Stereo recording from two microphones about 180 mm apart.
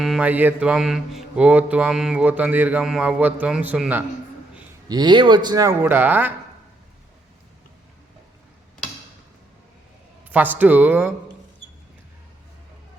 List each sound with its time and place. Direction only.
0.0 s speech: 5° right (ahead or behind)
4.9 s speech: 25° right (ahead or behind)
5.8 s speech: 10° right (ahead or behind)
10.2 s speech: 10° right (ahead or behind)